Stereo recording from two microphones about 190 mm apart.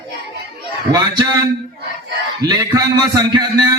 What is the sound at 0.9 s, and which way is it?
Speech, 20° right (ahead or behind).